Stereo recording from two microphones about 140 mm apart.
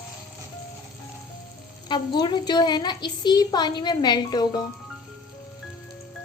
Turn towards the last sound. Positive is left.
turn(degrees=30)  # may be behind; listen again after turning